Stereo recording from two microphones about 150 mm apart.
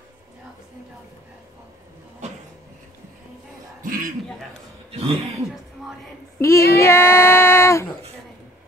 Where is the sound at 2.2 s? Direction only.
50° right (ahead or behind).